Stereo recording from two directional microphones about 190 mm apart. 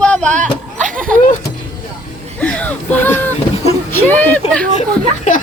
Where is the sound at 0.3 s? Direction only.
40° right (ahead or behind).